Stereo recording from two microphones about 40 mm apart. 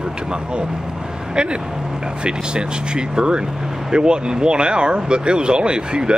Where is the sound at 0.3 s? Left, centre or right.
Right.